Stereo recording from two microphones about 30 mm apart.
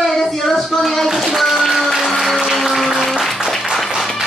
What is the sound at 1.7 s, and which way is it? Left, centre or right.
Music, centre.